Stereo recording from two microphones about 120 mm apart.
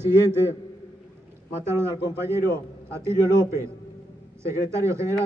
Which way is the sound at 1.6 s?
20° right (ahead or behind).